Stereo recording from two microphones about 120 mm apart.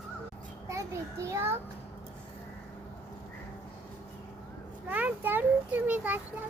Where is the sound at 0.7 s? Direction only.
25° right (ahead or behind).